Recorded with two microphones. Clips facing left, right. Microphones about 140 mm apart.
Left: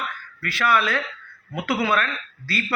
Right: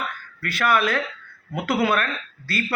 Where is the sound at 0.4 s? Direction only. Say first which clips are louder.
Right 1 dB; 50° right (ahead or behind).